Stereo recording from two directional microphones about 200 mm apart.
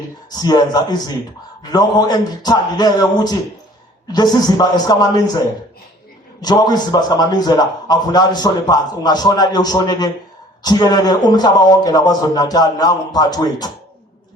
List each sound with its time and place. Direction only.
0.3 s a man's voice: 20° left (ahead or behind)
6.4 s a man's voice: 20° left (ahead or behind)